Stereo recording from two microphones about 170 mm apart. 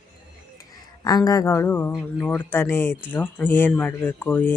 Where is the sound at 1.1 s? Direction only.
20° left (ahead or behind).